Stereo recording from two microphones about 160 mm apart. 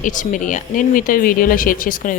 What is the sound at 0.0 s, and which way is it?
A woman's voice, 55° left (ahead or behind).